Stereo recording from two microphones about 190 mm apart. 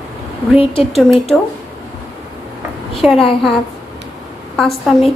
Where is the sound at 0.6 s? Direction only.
30° left (ahead or behind).